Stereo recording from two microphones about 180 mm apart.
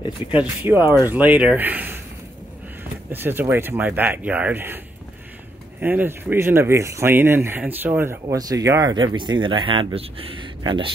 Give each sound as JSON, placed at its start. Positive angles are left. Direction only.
{"t": 0.7, "sound": "speech", "side_deg": -10}
{"t": 3.1, "sound": "speech", "side_deg": -10}
{"t": 5.8, "sound": "speech", "side_deg": -10}